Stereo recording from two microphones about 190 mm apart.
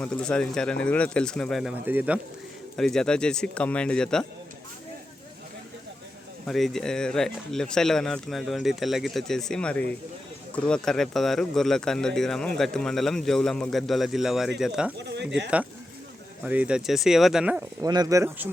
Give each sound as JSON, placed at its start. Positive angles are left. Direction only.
{"t": 0.0, "sound": "speech", "side_deg": 5}
{"t": 1.9, "sound": "speech", "side_deg": -10}
{"t": 2.7, "sound": "speech", "side_deg": 0}
{"t": 6.4, "sound": "speech", "side_deg": 0}
{"t": 16.4, "sound": "speech", "side_deg": -5}
{"t": 17.8, "sound": "speech", "side_deg": -20}